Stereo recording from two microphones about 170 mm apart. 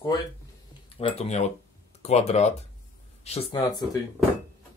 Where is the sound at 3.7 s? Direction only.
25° left (ahead or behind).